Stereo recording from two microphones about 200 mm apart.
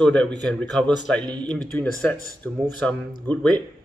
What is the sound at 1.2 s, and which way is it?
Speech, 20° right (ahead or behind).